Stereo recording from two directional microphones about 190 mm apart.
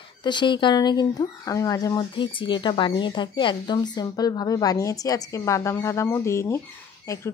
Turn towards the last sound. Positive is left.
turn(degrees=15)  # may be behind; listen again after turning